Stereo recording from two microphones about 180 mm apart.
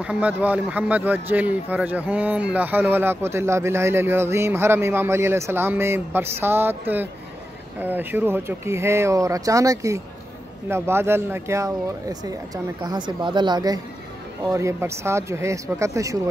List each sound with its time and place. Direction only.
0.0 s speech: 5° right (ahead or behind)